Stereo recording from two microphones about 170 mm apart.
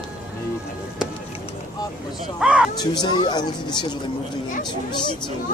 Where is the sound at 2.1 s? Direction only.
5° right (ahead or behind).